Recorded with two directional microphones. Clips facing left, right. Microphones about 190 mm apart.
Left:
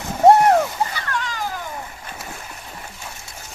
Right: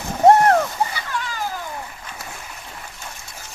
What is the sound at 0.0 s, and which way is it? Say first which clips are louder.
Splash: left 1 dB; 5° left (ahead or behind).